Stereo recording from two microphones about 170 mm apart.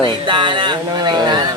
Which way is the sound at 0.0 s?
30° right (ahead or behind).